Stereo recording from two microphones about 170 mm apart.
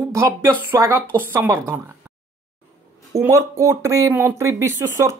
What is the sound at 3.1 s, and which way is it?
Speech, 15° right (ahead or behind).